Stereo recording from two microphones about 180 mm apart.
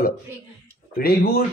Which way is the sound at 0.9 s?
60° left (ahead or behind).